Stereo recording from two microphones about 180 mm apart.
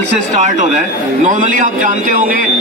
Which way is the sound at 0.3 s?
40° right (ahead or behind).